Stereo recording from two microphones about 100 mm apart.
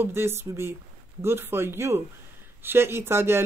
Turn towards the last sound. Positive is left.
turn(degrees=-25)  # may be behind; listen again after turning